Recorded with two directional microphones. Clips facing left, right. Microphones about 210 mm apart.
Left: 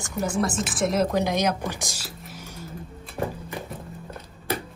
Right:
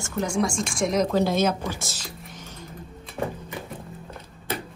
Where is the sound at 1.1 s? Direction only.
15° left (ahead or behind).